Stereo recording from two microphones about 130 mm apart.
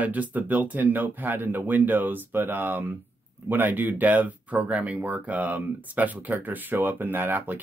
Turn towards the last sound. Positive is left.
turn(degrees=-15)  # may be behind; listen again after turning